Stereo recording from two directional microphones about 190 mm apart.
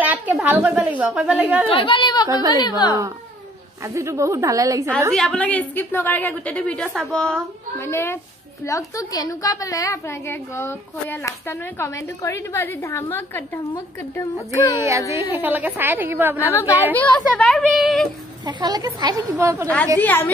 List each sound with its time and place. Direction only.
0.0 s speech: 10° right (ahead or behind)
1.7 s a woman's voice: 25° left (ahead or behind)
3.9 s a woman's voice: 15° right (ahead or behind)
5.1 s a woman's voice: 5° left (ahead or behind)
7.8 s a woman's voice: 15° left (ahead or behind)
15.3 s a woman's voice: 10° right (ahead or behind)
16.4 s a woman's voice: 15° left (ahead or behind)
18.4 s speech: 20° right (ahead or behind)
20.0 s a woman's voice: 10° left (ahead or behind)